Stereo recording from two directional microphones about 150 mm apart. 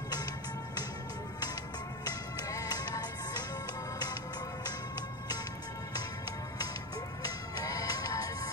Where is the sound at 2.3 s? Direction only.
25° left (ahead or behind).